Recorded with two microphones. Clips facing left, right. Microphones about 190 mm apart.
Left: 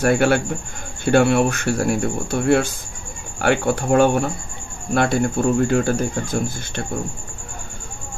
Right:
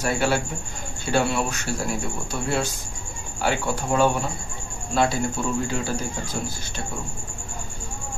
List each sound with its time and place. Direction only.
0.0 s speech: 55° left (ahead or behind)